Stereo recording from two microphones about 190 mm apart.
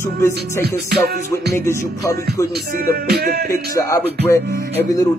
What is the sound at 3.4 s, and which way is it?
Music, 15° left (ahead or behind).